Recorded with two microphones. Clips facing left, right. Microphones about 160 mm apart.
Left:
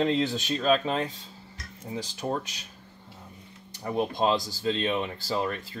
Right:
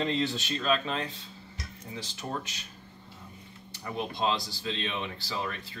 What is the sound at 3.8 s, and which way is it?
Speech, 45° left (ahead or behind).